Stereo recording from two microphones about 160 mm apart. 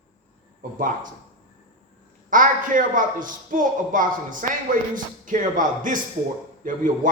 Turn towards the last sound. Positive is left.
turn(degrees=-55)  # may be behind; listen again after turning